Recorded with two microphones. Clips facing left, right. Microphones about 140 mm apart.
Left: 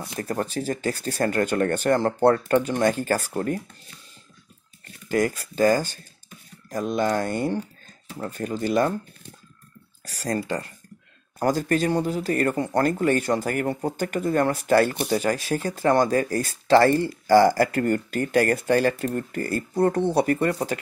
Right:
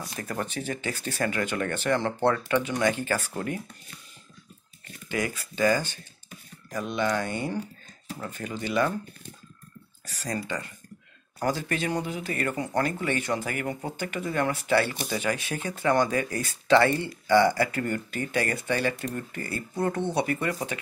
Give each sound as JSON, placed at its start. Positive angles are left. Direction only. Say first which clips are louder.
{"t": 0.2, "sound": "speech", "louder": "left 6 dB", "side_deg": 35}
{"t": 5.0, "sound": "speech", "louder": "left 7 dB", "side_deg": 40}
{"t": 10.1, "sound": "speech", "louder": "left 5 dB", "side_deg": 40}